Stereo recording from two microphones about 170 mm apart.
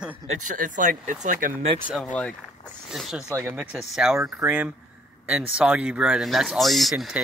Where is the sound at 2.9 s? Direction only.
Centre (ahead or behind).